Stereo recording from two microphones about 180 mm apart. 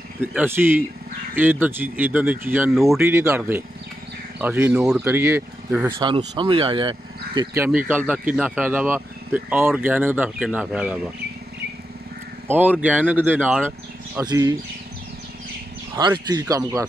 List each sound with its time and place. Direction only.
0.2 s speech: 10° right (ahead or behind)
5.9 s speech: 30° right (ahead or behind)
7.5 s speech: 10° right (ahead or behind)
12.4 s speech: 10° right (ahead or behind)
14.2 s speech: 20° right (ahead or behind)
16.0 s speech: 25° right (ahead or behind)